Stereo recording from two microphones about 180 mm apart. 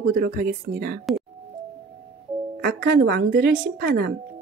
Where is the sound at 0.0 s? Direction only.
50° right (ahead or behind).